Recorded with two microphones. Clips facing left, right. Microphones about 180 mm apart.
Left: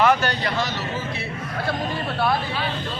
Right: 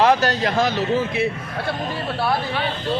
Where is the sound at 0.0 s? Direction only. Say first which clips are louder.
Right 3 dB; 35° right (ahead or behind).